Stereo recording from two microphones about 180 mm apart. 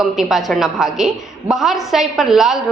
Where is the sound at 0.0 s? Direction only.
Centre (ahead or behind).